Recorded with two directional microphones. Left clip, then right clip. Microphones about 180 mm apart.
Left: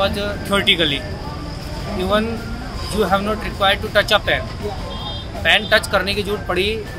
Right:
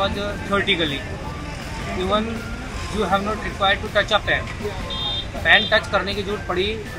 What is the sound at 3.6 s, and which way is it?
Speech, 10° left (ahead or behind).